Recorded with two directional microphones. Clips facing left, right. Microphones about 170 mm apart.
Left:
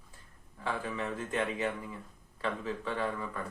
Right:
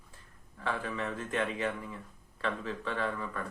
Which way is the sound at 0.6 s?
15° left (ahead or behind).